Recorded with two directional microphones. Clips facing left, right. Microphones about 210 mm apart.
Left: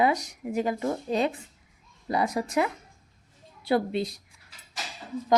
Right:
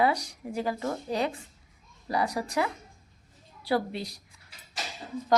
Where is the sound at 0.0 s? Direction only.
20° left (ahead or behind).